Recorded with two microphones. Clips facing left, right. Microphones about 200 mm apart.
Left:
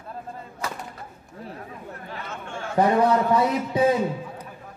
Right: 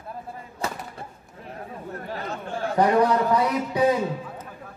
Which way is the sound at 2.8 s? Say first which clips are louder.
Even; 25° left (ahead or behind).